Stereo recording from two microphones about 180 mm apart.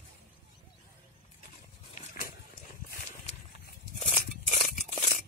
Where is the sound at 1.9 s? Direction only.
40° left (ahead or behind).